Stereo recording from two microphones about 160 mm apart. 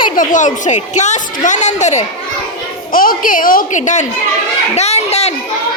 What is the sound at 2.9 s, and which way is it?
A woman's voice, 60° left (ahead or behind).